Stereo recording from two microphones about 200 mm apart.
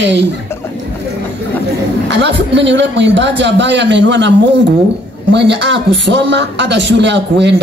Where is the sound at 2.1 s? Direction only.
60° right (ahead or behind).